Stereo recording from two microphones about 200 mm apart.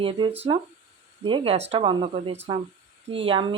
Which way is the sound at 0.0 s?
25° right (ahead or behind).